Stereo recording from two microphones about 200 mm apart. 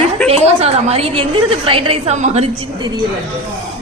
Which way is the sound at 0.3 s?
30° right (ahead or behind).